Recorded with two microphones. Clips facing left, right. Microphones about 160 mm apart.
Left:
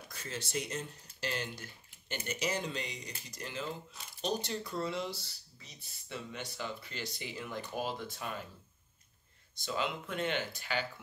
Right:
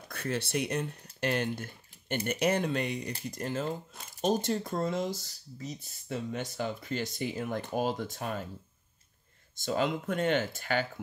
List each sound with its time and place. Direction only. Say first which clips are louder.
0.1 s speech: right 7 dB; 60° right (ahead or behind); by 8.5 s 45° right (ahead or behind)
9.6 s speech: right 6 dB; 45° right (ahead or behind)